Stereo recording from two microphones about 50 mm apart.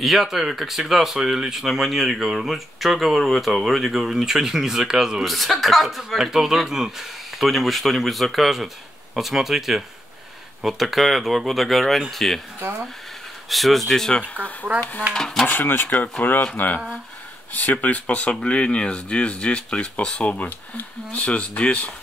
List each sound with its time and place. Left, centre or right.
0.0 s speech: centre
5.2 s speech: centre
13.5 s speech: centre
14.2 s speech: left
15.1 s speech: centre
15.4 s speech: left